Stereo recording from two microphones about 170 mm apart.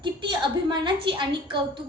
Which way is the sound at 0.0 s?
30° right (ahead or behind).